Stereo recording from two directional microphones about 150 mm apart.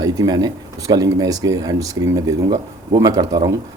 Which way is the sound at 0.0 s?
25° right (ahead or behind).